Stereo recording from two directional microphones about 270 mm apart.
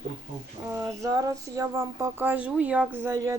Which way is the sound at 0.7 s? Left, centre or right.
Centre.